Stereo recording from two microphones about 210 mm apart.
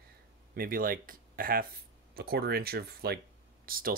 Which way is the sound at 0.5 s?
45° right (ahead or behind).